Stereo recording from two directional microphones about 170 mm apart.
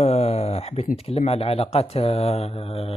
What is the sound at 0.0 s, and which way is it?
Speech, 40° left (ahead or behind).